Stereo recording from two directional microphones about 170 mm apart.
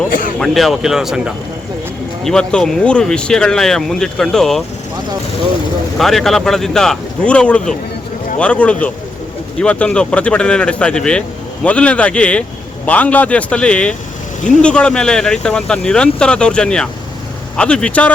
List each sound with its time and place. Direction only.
0.1 s speech: 55° left (ahead or behind)
0.3 s speech: centre (ahead or behind)
6.0 s a man's voice: centre (ahead or behind)